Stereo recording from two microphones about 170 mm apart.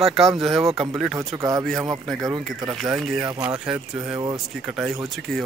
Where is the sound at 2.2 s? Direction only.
20° right (ahead or behind).